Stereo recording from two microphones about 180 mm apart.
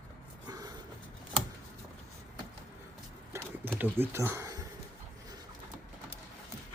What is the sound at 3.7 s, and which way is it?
Speech, 10° right (ahead or behind).